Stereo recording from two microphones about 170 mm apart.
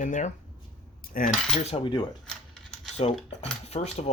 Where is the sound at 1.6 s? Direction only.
30° left (ahead or behind).